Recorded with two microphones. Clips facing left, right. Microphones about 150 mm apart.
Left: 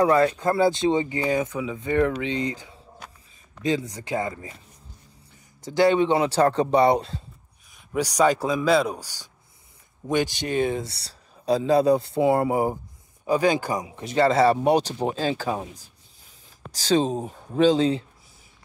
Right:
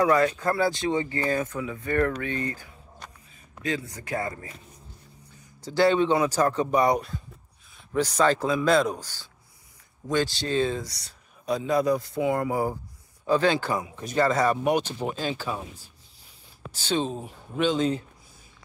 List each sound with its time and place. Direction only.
0.0 s speech: 30° left (ahead or behind)
7.9 s a man's voice: 15° left (ahead or behind)
13.2 s speech: 10° left (ahead or behind); by 15.6 s 40° left (ahead or behind)
16.7 s speech: 35° left (ahead or behind)